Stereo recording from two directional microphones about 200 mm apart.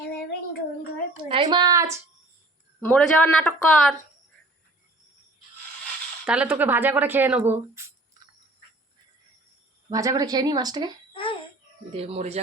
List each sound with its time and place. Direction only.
1.1 s a sound: 25° right (ahead or behind)
2.8 s speech: 5° left (ahead or behind)
6.2 s speech: 5° right (ahead or behind)
9.9 s speech: 15° right (ahead or behind)
11.1 s a sound: 25° left (ahead or behind)
11.9 s speech: 30° right (ahead or behind)